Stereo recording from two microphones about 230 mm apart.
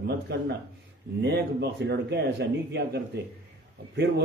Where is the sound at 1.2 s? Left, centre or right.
Right.